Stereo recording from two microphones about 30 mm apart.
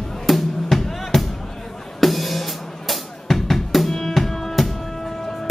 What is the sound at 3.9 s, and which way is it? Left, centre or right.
Music, centre.